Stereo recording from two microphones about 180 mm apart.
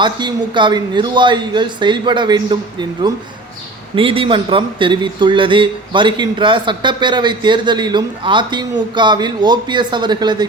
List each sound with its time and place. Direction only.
0.0 s speech: 25° right (ahead or behind)